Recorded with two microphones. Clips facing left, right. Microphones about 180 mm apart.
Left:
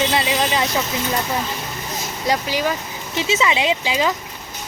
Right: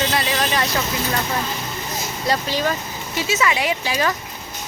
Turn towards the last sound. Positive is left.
turn(degrees=20)  # may be behind; listen again after turning